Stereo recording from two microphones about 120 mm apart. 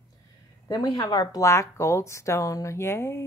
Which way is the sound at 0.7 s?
30° left (ahead or behind).